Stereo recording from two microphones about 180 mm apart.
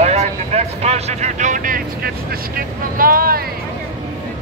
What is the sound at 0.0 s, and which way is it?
Speech, 40° right (ahead or behind).